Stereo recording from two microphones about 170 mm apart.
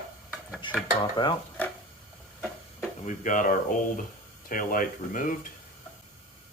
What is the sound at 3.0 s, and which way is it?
Dishes, 50° left (ahead or behind).